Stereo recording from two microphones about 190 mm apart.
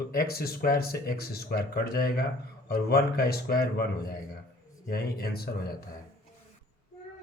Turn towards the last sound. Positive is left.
turn(degrees=55)  # may be behind; listen again after turning